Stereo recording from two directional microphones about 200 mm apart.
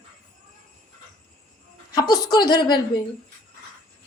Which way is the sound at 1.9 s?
20° left (ahead or behind).